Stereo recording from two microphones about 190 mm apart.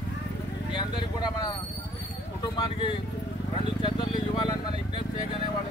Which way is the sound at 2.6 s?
25° left (ahead or behind).